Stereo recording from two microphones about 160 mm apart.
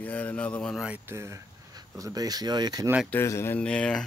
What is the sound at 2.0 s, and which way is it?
Speech, 25° right (ahead or behind).